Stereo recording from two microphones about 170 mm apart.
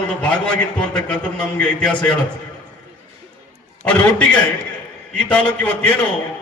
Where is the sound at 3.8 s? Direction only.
5° left (ahead or behind).